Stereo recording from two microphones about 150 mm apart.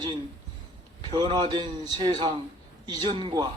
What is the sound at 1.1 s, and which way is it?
A man's voice, 30° right (ahead or behind).